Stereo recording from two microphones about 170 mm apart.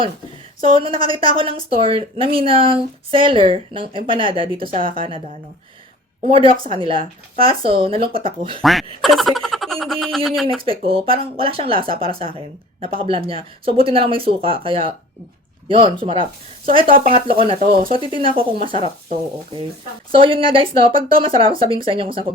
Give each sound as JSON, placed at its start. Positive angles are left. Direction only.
{"t": 0.6, "sound": "speech", "side_deg": -30}
{"t": 6.2, "sound": "speech", "side_deg": -35}
{"t": 8.6, "sound": "speech", "side_deg": 0}
{"t": 10.7, "sound": "speech", "side_deg": -35}
{"t": 16.9, "sound": "speech", "side_deg": -55}
{"t": 17.4, "sound": "speech", "side_deg": -35}
{"t": 20.1, "sound": "speech", "side_deg": -30}